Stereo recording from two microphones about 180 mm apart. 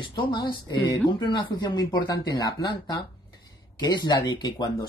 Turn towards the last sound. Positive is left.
turn(degrees=20)  # may be behind; listen again after turning